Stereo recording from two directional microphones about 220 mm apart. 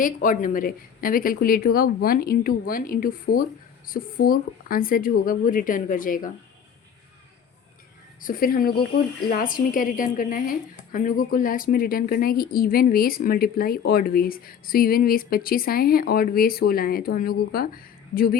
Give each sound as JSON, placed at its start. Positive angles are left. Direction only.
{"t": 0.0, "sound": "a woman's voice", "side_deg": 40}
{"t": 8.2, "sound": "a woman's voice", "side_deg": 40}